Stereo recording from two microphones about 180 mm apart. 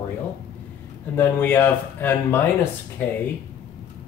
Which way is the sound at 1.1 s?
10° left (ahead or behind).